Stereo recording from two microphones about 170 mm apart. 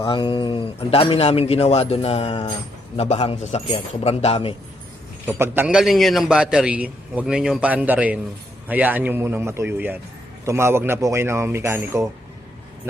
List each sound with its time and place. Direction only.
0.0 s speech: 30° left (ahead or behind)
5.2 s a man's voice: 10° right (ahead or behind)